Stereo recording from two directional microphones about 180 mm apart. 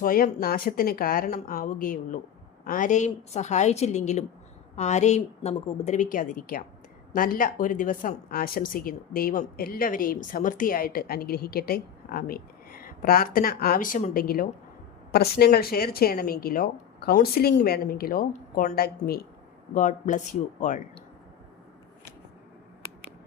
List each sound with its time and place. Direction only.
0.0 s a woman's voice: 50° left (ahead or behind)
19.7 s a woman's voice: 45° left (ahead or behind)